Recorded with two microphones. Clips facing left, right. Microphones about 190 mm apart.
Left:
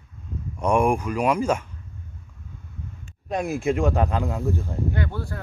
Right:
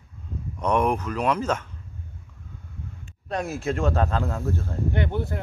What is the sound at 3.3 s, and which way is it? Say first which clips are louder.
Speech: left 3 dB; 15° left (ahead or behind).